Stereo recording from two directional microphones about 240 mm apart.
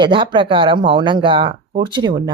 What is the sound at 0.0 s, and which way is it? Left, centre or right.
Speech, right.